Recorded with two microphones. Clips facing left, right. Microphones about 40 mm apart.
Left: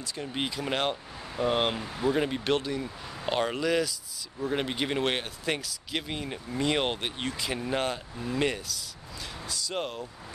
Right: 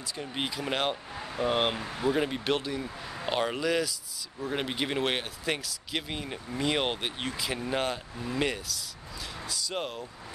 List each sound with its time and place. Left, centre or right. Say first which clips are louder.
0.2 s speech: left 1 dB; centre